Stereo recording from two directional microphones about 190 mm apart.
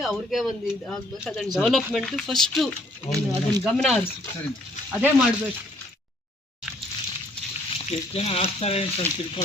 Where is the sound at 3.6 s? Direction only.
Centre (ahead or behind).